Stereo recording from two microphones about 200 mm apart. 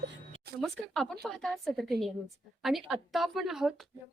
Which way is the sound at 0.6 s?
Centre (ahead or behind).